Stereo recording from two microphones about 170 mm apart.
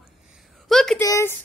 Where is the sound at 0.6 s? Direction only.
Centre (ahead or behind).